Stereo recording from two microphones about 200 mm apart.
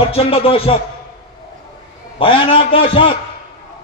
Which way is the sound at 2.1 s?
25° left (ahead or behind).